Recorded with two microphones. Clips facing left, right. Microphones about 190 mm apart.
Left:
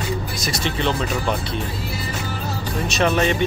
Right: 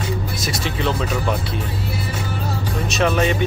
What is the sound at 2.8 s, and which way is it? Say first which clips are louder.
Speech: even; centre (ahead or behind).